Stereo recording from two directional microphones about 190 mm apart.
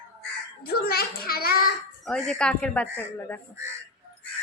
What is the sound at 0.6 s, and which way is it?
A child's voice, 55° left (ahead or behind).